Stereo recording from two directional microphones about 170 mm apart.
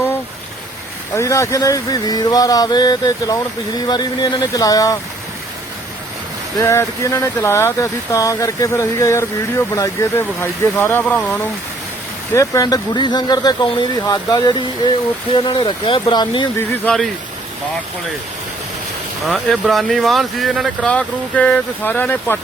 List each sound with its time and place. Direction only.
1.1 s speech: 15° left (ahead or behind)
6.6 s speech: 15° left (ahead or behind)
12.3 s speech: 20° left (ahead or behind)
16.6 s speech: 5° left (ahead or behind)
19.2 s speech: centre (ahead or behind)